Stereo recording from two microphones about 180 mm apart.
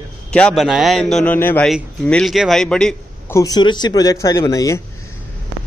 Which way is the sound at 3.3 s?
20° left (ahead or behind).